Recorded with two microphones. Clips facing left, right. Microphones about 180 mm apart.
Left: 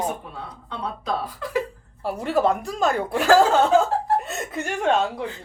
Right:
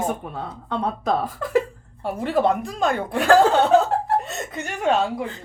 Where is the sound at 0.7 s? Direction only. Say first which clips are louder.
Right 5 dB; 50° right (ahead or behind).